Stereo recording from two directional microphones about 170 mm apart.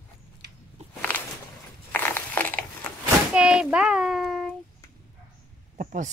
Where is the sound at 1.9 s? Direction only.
10° left (ahead or behind).